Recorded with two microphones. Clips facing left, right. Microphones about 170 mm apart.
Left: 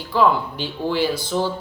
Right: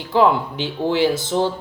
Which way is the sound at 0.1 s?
20° right (ahead or behind).